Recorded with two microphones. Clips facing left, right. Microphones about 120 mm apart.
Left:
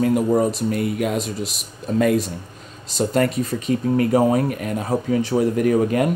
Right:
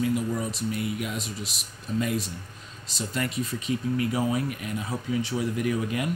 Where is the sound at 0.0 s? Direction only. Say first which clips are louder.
Left 9 dB; 55° left (ahead or behind).